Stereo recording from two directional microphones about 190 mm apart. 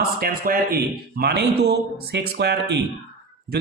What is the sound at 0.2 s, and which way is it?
A man's voice, 50° right (ahead or behind).